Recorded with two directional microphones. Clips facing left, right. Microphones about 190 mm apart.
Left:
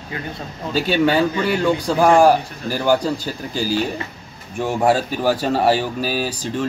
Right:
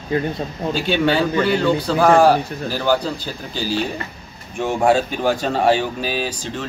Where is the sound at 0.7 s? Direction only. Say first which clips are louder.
Left 2 dB; 10° left (ahead or behind).